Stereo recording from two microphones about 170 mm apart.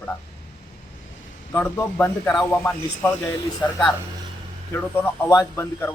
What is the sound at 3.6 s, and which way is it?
A man's voice, 20° left (ahead or behind).